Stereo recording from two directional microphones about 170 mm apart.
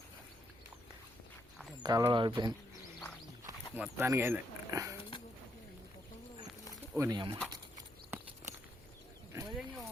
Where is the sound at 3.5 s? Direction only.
10° right (ahead or behind).